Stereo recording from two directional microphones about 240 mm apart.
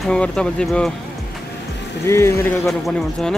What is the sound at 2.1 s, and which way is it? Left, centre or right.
Speech, centre.